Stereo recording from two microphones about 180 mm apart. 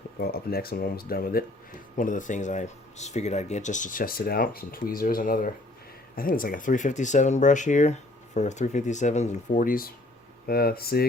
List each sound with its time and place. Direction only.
0.2 s speech: 60° left (ahead or behind)